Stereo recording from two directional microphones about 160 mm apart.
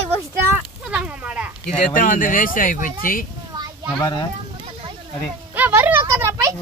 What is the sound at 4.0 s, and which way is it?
Speech, 30° left (ahead or behind).